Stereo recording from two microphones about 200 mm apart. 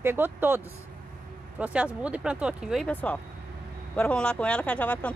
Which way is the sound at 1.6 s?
5° right (ahead or behind).